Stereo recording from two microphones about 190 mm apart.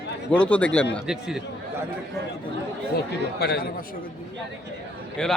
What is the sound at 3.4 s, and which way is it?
Speech, 55° left (ahead or behind).